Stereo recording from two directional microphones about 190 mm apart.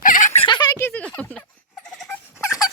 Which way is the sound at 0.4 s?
25° left (ahead or behind).